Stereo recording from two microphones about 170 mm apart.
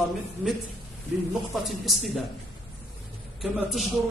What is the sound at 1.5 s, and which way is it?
Speech, centre (ahead or behind).